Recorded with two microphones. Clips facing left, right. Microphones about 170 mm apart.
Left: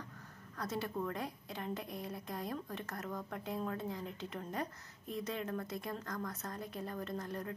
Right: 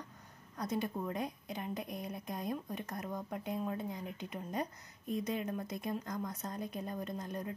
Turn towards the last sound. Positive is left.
turn(degrees=-20)  # may be behind; listen again after turning